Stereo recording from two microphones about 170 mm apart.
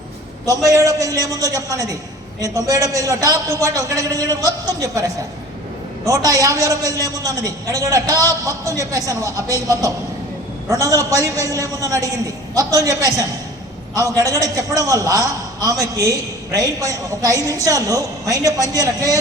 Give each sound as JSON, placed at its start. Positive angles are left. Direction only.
{"t": 0.4, "sound": "a man's voice", "side_deg": 15}
{"t": 0.7, "sound": "a man's voice", "side_deg": -20}